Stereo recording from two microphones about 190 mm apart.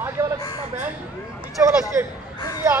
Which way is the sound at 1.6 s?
10° right (ahead or behind).